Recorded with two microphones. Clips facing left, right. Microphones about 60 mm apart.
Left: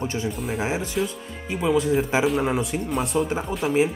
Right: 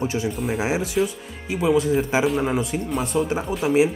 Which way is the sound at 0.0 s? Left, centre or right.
Centre.